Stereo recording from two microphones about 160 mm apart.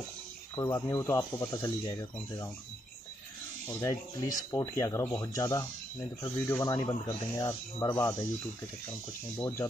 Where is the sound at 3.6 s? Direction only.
15° left (ahead or behind).